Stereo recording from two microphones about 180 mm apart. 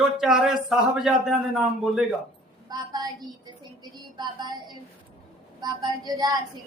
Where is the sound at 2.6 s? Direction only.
20° right (ahead or behind).